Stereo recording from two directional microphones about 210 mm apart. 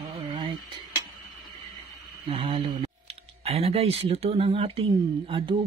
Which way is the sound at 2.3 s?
25° right (ahead or behind).